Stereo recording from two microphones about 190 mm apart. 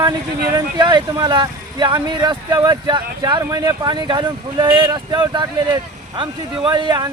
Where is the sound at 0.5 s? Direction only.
25° right (ahead or behind).